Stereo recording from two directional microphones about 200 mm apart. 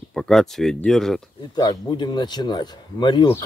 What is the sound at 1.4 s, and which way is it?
A man's voice, 20° left (ahead or behind).